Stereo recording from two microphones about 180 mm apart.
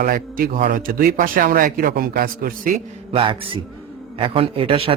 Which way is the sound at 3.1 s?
30° right (ahead or behind).